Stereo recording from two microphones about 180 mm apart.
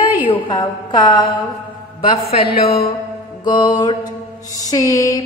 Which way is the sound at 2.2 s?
60° left (ahead or behind).